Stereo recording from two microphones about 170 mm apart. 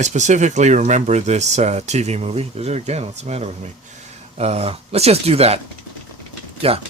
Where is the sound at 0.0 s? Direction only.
45° right (ahead or behind).